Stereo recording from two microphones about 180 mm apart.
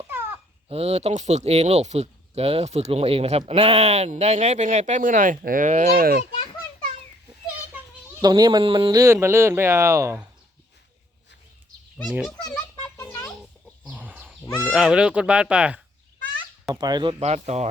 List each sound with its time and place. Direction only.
0.7 s speech: 35° right (ahead or behind); by 6.2 s 55° right (ahead or behind)
8.2 s speech: 20° right (ahead or behind)
12.0 s speech: centre (ahead or behind)
13.0 s a sound: 15° left (ahead or behind)
13.8 s a sound: 10° right (ahead or behind)
14.6 s speech: 5° right (ahead or behind)
16.7 s speech: 25° right (ahead or behind); by 17.7 s 40° right (ahead or behind)